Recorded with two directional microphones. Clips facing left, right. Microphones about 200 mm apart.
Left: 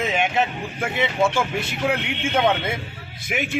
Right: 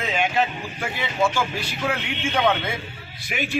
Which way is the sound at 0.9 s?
20° left (ahead or behind).